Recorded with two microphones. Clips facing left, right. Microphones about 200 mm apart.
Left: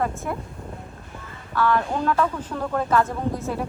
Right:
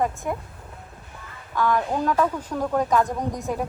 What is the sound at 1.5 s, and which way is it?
Speech, 15° right (ahead or behind).